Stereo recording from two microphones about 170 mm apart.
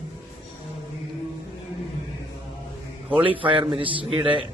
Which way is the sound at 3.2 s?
30° right (ahead or behind).